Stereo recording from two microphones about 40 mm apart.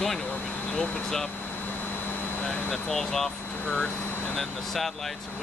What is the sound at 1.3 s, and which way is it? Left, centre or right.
Vehicle, left.